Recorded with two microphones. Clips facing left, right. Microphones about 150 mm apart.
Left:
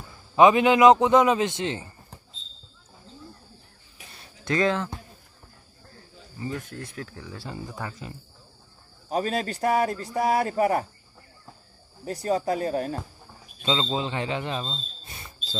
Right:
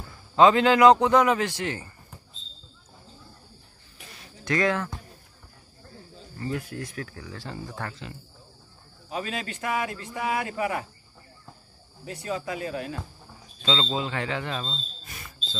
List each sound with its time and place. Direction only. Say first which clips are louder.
0.4 s a man's voice: left 1 dB; 20° left (ahead or behind)
4.5 s a man's voice: left 1 dB; 25° left (ahead or behind)
6.8 s a man's voice: right 1 dB; 30° left (ahead or behind)
7.3 s speech: even; 15° left (ahead or behind)
9.1 s speech: left 6 dB; 40° left (ahead or behind)
12.0 s speech: left 6 dB; 40° left (ahead or behind)
13.6 s speech: left 1 dB; 20° left (ahead or behind)